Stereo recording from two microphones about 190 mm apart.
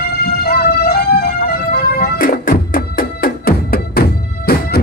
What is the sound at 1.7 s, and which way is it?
Music, 50° left (ahead or behind).